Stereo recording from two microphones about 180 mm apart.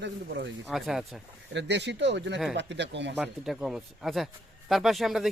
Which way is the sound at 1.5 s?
75° right (ahead or behind).